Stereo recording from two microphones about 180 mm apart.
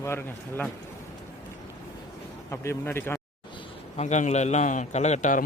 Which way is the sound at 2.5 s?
15° left (ahead or behind).